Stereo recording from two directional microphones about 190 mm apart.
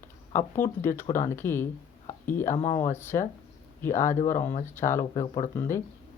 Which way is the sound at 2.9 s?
10° left (ahead or behind).